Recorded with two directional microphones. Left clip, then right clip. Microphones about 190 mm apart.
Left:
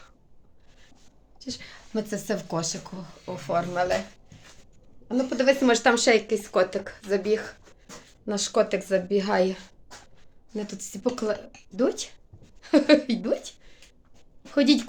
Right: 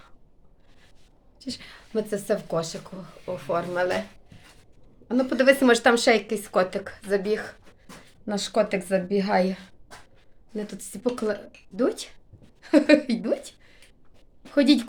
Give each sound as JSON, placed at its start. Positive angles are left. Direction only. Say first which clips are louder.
{"t": 1.4, "sound": "a woman's voice", "louder": "right 1 dB", "side_deg": -20}
{"t": 1.9, "sound": "speech", "louder": "right 4 dB", "side_deg": 0}
{"t": 5.0, "sound": "a woman's voice", "louder": "right 3 dB", "side_deg": -25}